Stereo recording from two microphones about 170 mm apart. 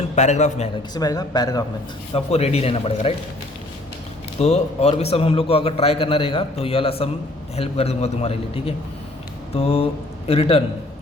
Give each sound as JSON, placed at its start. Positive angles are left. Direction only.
{"t": 0.2, "sound": "a man's voice", "side_deg": 45}
{"t": 0.9, "sound": "speech", "side_deg": 20}
{"t": 2.1, "sound": "a man's voice", "side_deg": 35}
{"t": 4.4, "sound": "a man's voice", "side_deg": 40}